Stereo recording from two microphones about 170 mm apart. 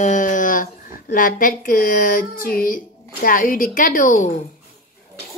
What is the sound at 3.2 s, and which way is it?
A woman's voice, 55° left (ahead or behind).